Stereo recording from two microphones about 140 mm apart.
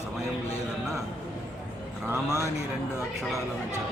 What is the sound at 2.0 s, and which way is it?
Speech, 20° right (ahead or behind).